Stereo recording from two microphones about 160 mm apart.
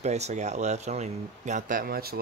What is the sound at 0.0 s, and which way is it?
Speech, 45° right (ahead or behind).